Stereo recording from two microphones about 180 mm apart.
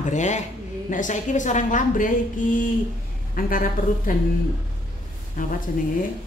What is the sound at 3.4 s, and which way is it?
Speech, 50° left (ahead or behind).